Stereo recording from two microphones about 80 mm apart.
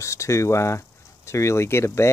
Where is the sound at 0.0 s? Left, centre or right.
Left.